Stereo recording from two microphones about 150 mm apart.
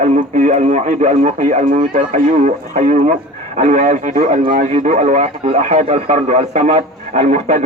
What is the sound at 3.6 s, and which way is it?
Speech, 60° right (ahead or behind).